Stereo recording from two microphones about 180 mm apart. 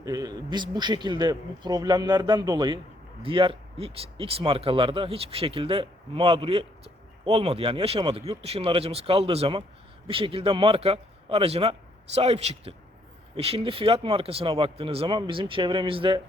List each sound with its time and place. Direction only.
0.0 s speech: 20° right (ahead or behind)